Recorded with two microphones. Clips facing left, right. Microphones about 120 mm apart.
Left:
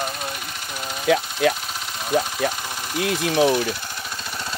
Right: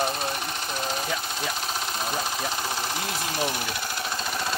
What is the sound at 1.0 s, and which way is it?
Speech, 80° left.